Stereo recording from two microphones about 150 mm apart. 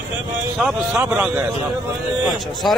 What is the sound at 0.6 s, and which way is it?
Speech, 5° right (ahead or behind).